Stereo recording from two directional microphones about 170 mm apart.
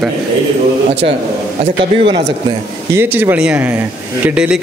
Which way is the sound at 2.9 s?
15° right (ahead or behind).